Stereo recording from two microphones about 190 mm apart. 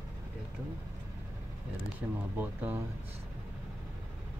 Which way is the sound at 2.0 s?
5° right (ahead or behind).